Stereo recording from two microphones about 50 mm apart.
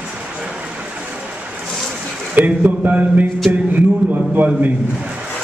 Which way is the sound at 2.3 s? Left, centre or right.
Right.